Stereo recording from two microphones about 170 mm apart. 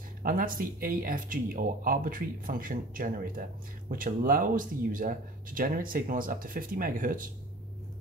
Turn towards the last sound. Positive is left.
turn(degrees=-55)  # may be behind; listen again after turning